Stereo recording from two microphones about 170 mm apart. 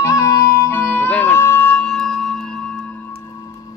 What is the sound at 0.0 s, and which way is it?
Music, 20° left (ahead or behind).